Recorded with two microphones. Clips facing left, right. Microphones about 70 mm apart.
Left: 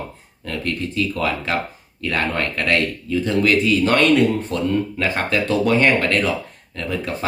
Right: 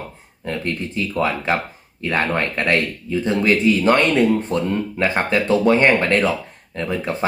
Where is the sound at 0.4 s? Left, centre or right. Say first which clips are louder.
Right 1 dB; right.